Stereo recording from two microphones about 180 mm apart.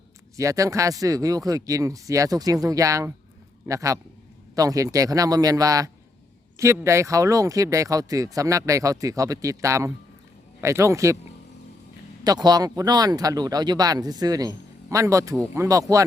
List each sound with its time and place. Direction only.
0.3 s speech: 15° right (ahead or behind)
12.2 s speech: 20° right (ahead or behind)